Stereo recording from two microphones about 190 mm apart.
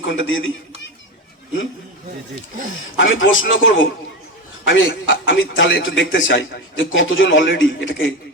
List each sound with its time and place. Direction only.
0.0 s a man's voice: 75° left (ahead or behind)
3.0 s a man's voice: 85° left
4.6 s a man's voice: 75° left (ahead or behind)